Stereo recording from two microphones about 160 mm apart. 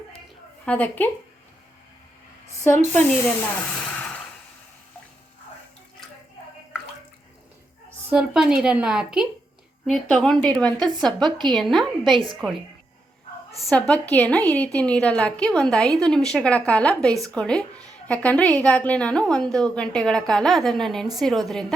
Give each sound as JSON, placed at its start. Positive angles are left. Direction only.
{"t": 0.6, "sound": "a woman's voice", "side_deg": 10}
{"t": 2.6, "sound": "a woman's voice", "side_deg": 15}
{"t": 3.8, "sound": "a sound", "side_deg": 10}
{"t": 8.1, "sound": "a woman's voice", "side_deg": -5}
{"t": 11.3, "sound": "a woman's voice", "side_deg": -30}
{"t": 11.5, "sound": "a woman's voice", "side_deg": 0}